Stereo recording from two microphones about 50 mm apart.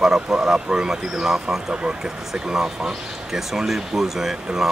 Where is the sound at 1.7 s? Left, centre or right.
Right.